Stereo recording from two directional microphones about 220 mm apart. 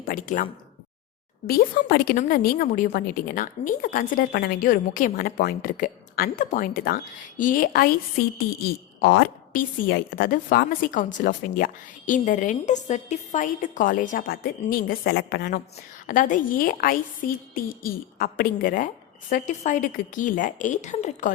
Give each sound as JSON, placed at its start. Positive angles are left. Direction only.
{"t": 0.0, "sound": "speech", "side_deg": 40}
{"t": 1.5, "sound": "a woman's voice", "side_deg": 45}
{"t": 9.0, "sound": "speech", "side_deg": 50}
{"t": 9.5, "sound": "a woman's voice", "side_deg": 40}